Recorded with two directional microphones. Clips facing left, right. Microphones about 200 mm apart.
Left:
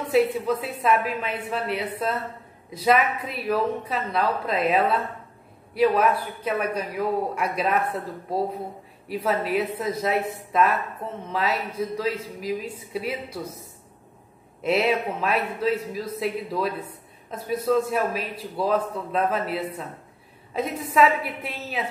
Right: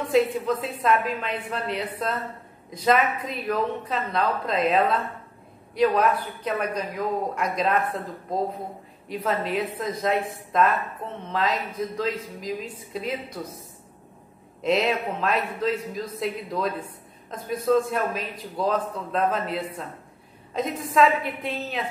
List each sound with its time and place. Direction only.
0.1 s a man's voice: 10° left (ahead or behind)
14.6 s a man's voice: 5° left (ahead or behind)